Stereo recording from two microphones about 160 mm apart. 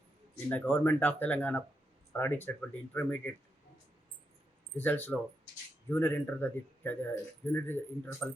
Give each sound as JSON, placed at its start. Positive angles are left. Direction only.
{"t": 0.4, "sound": "speech", "side_deg": 15}
{"t": 4.8, "sound": "speech", "side_deg": 10}